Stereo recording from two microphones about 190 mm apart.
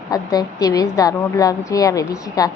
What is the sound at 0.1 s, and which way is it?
A woman's voice, 20° left (ahead or behind).